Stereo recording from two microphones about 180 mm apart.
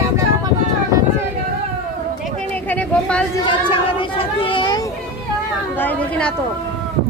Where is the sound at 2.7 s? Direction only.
5° left (ahead or behind).